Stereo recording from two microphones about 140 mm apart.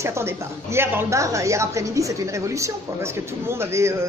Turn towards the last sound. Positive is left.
turn(degrees=-20)  # may be behind; listen again after turning